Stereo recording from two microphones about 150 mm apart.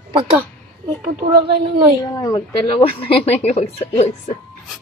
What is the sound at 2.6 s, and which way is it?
Speech, 40° left (ahead or behind).